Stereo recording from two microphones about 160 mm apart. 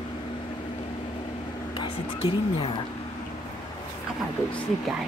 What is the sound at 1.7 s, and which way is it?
Music, 35° left (ahead or behind).